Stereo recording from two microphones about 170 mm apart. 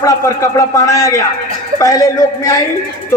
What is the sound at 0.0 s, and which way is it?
A man's voice, 20° left (ahead or behind).